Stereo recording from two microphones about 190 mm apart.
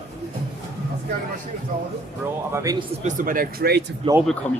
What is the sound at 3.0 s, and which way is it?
Speech, 45° right (ahead or behind).